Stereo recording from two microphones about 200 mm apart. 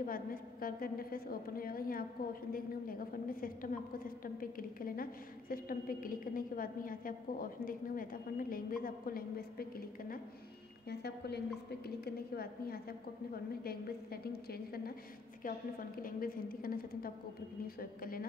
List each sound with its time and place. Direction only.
0.0 s a woman's voice: 45° left (ahead or behind)
16.0 s a woman's voice: 45° left (ahead or behind)